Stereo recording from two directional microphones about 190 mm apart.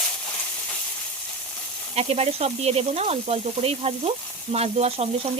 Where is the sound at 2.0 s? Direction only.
35° right (ahead or behind).